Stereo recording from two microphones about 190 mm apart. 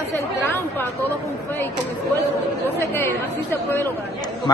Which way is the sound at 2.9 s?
10° left (ahead or behind).